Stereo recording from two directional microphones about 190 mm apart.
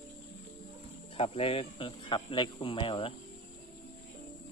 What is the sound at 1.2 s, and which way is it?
Speech, 30° left (ahead or behind).